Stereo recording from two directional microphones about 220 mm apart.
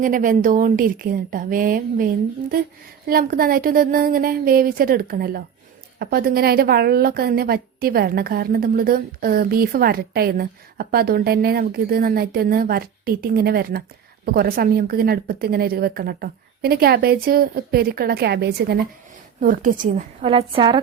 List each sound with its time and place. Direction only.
0.0 s a woman's voice: 40° right (ahead or behind)
3.1 s a woman's voice: 40° right (ahead or behind)
19.4 s a woman's voice: 35° right (ahead or behind); by 20.8 s 20° right (ahead or behind)